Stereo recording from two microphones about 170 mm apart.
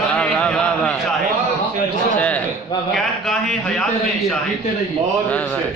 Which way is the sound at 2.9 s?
Centre (ahead or behind).